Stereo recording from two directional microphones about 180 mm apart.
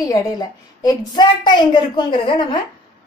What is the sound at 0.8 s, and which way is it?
A woman's voice, 25° left (ahead or behind).